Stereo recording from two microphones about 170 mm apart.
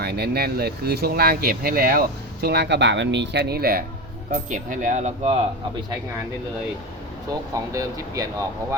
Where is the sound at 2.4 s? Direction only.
80° right; by 3.8 s 65° right (ahead or behind).